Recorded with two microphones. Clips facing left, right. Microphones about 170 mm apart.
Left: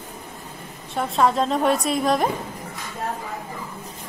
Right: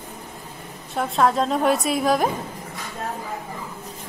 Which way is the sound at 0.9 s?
Centre (ahead or behind).